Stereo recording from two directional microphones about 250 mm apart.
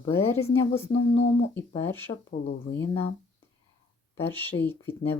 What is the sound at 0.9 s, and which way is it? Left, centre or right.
Speech, left.